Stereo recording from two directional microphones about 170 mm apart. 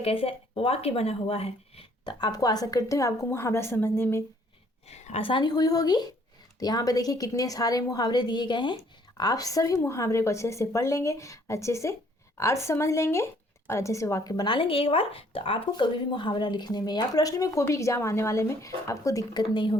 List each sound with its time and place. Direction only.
0.0 s speech: 35° left (ahead or behind); by 4.2 s 15° left (ahead or behind)
4.9 s speech: 40° left (ahead or behind)